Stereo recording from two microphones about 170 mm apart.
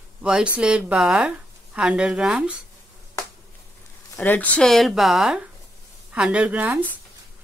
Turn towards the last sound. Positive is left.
turn(degrees=-10)  # may be behind; listen again after turning